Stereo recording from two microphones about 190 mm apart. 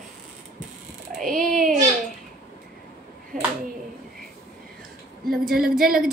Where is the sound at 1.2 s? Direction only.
45° right (ahead or behind).